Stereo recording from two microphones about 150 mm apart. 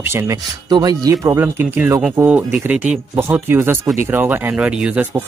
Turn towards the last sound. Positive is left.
turn(degrees=-10)  # may be behind; listen again after turning